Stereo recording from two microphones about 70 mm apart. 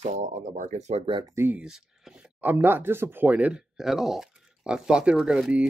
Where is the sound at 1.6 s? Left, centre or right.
Centre.